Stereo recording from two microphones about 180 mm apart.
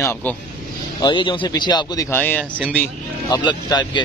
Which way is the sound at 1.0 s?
25° left (ahead or behind).